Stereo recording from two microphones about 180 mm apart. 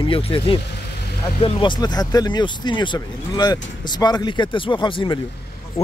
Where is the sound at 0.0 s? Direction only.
30° left (ahead or behind).